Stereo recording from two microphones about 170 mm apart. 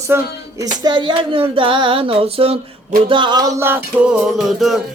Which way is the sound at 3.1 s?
25° right (ahead or behind).